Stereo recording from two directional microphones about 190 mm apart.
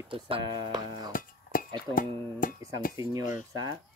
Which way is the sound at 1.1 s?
45° left (ahead or behind).